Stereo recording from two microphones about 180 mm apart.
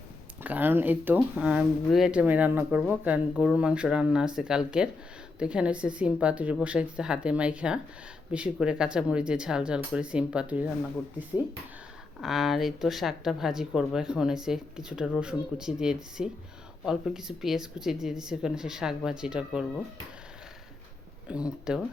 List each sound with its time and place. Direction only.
0.4 s speech: 10° right (ahead or behind)
12.2 s speech: centre (ahead or behind)
21.2 s speech: 5° right (ahead or behind)